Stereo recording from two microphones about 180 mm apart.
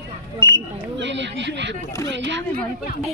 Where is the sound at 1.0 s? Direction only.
80° right.